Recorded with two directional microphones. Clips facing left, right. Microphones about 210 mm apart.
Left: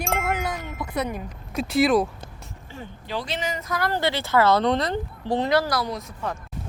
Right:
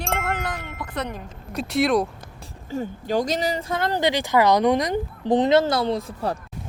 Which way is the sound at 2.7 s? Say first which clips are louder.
Right 9 dB; 45° right (ahead or behind).